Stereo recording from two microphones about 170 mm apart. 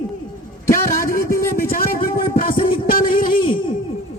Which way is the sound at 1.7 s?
55° left (ahead or behind).